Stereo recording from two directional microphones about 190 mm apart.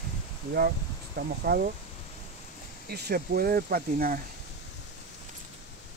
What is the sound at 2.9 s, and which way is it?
Speech, 55° right (ahead or behind).